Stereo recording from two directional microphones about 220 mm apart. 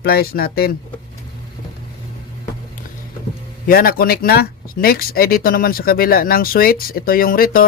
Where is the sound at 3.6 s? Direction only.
40° left (ahead or behind).